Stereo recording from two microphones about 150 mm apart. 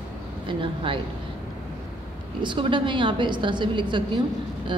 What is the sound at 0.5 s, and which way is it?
Speech, 35° right (ahead or behind).